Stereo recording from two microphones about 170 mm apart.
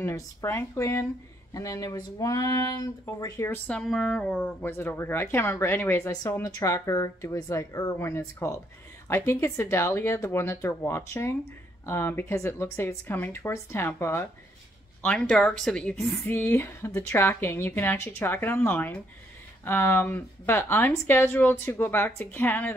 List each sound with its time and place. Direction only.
0.0 s speech: 15° left (ahead or behind)